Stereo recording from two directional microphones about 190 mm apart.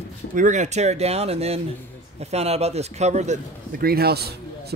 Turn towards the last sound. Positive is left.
turn(degrees=-55)  # may be behind; listen again after turning